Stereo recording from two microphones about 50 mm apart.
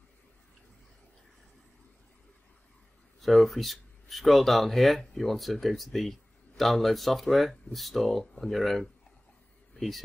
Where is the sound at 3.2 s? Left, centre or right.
Centre.